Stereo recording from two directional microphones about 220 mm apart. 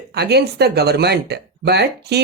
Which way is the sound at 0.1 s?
50° right (ahead or behind).